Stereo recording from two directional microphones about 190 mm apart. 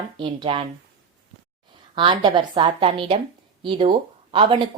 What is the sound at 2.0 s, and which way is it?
A woman's voice, 25° right (ahead or behind).